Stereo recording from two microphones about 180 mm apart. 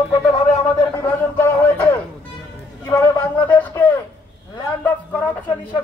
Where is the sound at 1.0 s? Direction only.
10° left (ahead or behind).